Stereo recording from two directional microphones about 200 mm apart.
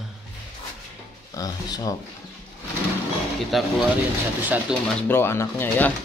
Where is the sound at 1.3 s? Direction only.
20° left (ahead or behind).